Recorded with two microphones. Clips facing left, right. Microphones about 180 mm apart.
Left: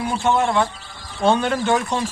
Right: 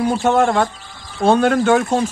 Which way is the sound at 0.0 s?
45° right (ahead or behind).